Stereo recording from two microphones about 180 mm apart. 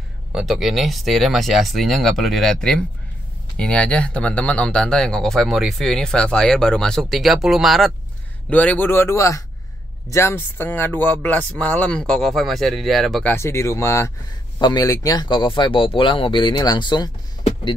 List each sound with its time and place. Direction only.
0.3 s speech: centre (ahead or behind); by 17.5 s 25° left (ahead or behind)